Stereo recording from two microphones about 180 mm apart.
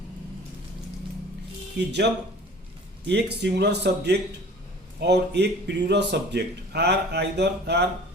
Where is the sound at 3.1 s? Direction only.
70° right (ahead or behind).